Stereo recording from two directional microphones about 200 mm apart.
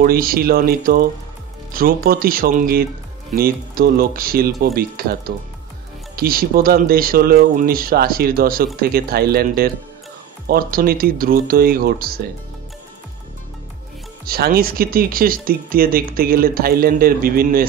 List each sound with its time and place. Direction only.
0.0 s speech: 45° right (ahead or behind)
14.2 s speech: 50° right (ahead or behind)